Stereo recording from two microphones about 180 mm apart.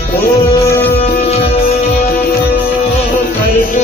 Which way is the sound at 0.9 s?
35° left (ahead or behind).